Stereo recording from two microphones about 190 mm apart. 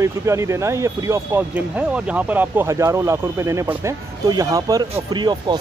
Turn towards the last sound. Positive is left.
turn(degrees=-25)  # may be behind; listen again after turning